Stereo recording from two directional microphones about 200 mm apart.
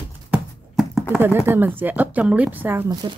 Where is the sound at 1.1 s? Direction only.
10° right (ahead or behind).